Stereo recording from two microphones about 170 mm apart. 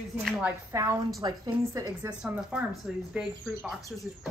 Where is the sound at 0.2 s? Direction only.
5° right (ahead or behind); by 2.1 s 20° right (ahead or behind).